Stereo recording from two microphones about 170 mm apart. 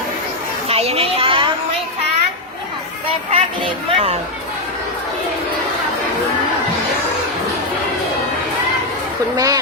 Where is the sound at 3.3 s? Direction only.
35° right (ahead or behind).